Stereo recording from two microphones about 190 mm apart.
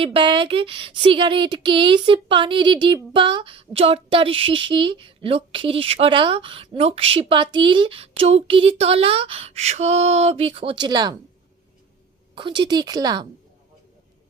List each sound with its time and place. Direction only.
0.0 s speech: 25° right (ahead or behind)
12.3 s speech: 25° right (ahead or behind)